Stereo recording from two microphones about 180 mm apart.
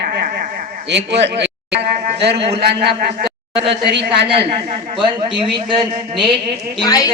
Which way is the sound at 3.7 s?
70° right (ahead or behind).